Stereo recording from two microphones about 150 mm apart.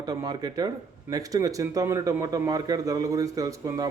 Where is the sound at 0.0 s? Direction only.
25° right (ahead or behind).